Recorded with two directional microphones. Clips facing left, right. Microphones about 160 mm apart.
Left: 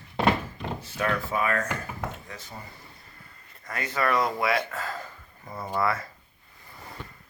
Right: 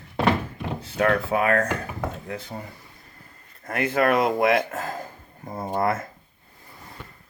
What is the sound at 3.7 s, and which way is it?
Speech, 55° right (ahead or behind).